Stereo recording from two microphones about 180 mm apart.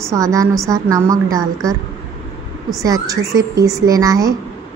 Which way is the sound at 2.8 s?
20° right (ahead or behind).